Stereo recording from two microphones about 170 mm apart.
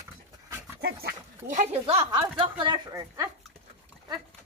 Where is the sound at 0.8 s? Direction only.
70° right (ahead or behind); by 3.3 s 20° right (ahead or behind).